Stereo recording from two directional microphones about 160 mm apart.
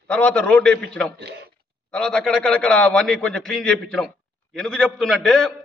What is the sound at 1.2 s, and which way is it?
Speech, 90° right.